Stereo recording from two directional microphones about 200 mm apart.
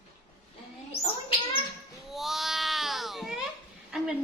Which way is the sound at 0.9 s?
30° left (ahead or behind).